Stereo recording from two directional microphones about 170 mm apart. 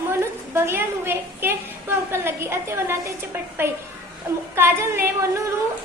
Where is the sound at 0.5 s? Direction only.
15° right (ahead or behind).